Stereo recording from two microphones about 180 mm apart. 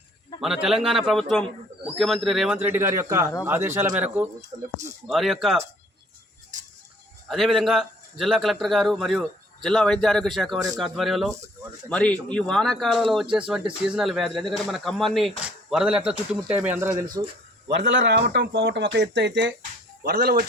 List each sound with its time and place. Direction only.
0.4 s speech: centre (ahead or behind)
4.4 s speech: 40° right (ahead or behind)
5.0 s speech: centre (ahead or behind)
7.3 s speech: centre (ahead or behind); by 17.2 s 20° right (ahead or behind)
17.7 s speech: 85° right
20.0 s speech: 60° right (ahead or behind)